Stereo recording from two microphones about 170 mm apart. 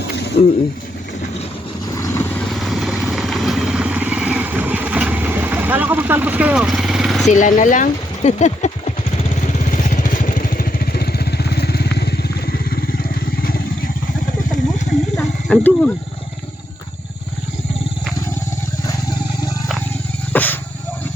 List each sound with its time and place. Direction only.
2.5 s vehicle: centre (ahead or behind)
7.3 s vehicle: 45° left (ahead or behind)
15.1 s wild animals: 10° left (ahead or behind)
20.3 s wild animals: 10° left (ahead or behind)